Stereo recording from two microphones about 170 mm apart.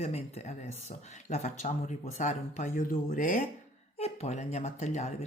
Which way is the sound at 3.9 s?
40° left (ahead or behind).